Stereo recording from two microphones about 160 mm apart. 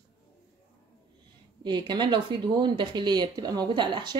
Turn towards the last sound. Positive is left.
turn(degrees=-30)  # may be behind; listen again after turning